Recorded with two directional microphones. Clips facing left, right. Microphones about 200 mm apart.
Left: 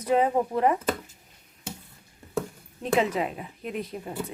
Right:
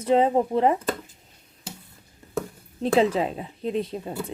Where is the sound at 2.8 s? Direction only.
30° right (ahead or behind).